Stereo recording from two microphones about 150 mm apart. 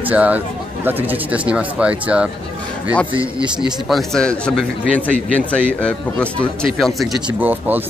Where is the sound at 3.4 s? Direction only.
Centre (ahead or behind).